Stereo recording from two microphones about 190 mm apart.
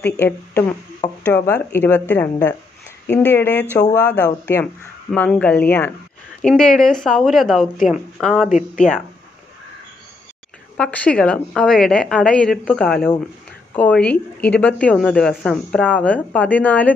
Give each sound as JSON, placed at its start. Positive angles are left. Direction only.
{"t": 0.2, "sound": "a woman's voice", "side_deg": 10}
{"t": 8.5, "sound": "speech", "side_deg": 40}
{"t": 10.8, "sound": "a woman's voice", "side_deg": 5}